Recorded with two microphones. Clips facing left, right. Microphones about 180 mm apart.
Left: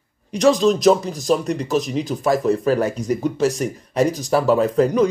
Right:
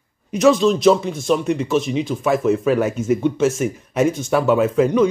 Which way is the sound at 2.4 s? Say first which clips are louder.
Right 3 dB; centre (ahead or behind).